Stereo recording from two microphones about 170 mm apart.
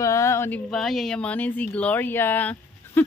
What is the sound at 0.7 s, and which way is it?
Speech, centre (ahead or behind).